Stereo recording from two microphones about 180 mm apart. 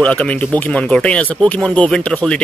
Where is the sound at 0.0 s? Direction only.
5° left (ahead or behind).